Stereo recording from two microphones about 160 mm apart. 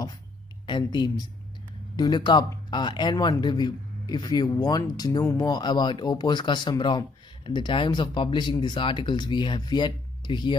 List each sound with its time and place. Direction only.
0.7 s speech: 30° left (ahead or behind)